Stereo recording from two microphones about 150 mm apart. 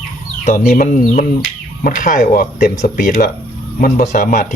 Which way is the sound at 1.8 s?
60° left (ahead or behind).